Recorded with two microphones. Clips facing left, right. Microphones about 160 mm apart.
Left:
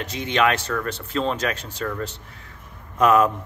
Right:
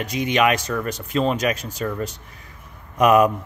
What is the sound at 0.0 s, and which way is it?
Speech, 10° right (ahead or behind).